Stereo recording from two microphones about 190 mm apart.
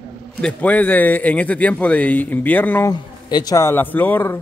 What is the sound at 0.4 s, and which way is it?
Speech, 5° left (ahead or behind).